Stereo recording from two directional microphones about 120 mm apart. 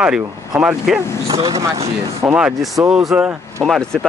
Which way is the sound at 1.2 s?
30° right (ahead or behind).